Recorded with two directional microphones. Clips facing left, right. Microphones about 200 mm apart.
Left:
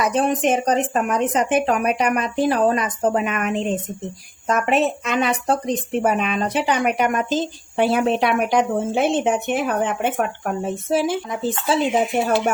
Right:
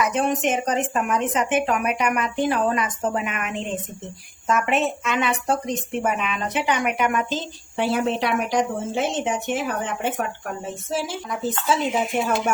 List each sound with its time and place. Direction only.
0.0 s a woman's voice: 35° left (ahead or behind); by 11.2 s 55° left (ahead or behind)
11.3 s speech: 30° left (ahead or behind)